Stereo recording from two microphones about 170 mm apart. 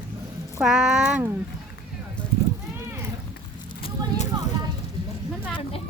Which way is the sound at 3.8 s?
40° left (ahead or behind).